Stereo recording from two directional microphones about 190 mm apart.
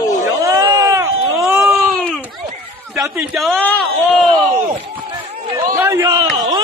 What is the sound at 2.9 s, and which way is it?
Speech, 10° right (ahead or behind).